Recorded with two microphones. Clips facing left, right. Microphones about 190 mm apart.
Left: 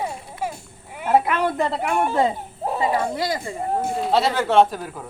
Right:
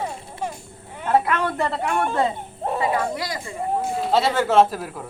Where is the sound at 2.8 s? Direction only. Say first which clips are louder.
Left 2 dB; 25° left (ahead or behind).